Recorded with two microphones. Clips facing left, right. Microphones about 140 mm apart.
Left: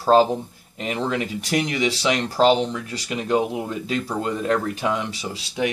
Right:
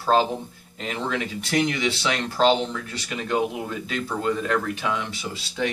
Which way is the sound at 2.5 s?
15° left (ahead or behind).